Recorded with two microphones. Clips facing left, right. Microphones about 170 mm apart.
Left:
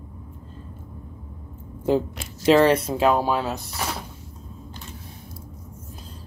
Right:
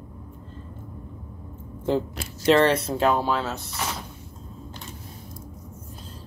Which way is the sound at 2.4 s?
5° left (ahead or behind).